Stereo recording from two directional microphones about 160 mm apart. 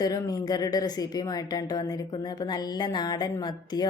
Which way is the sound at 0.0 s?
25° left (ahead or behind).